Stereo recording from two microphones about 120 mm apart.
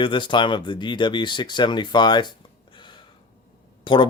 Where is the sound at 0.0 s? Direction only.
45° left (ahead or behind).